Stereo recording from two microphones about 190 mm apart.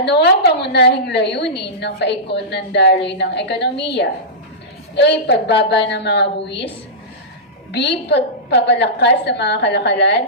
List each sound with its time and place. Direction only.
0.0 s a woman's voice: 60° left (ahead or behind)
7.7 s a woman's voice: 60° left (ahead or behind)